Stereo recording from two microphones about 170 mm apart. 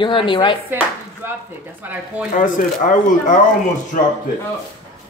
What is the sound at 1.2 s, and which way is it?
Speech, 15° right (ahead or behind).